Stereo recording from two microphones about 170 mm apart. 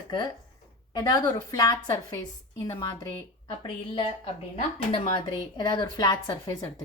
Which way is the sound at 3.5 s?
30° left (ahead or behind).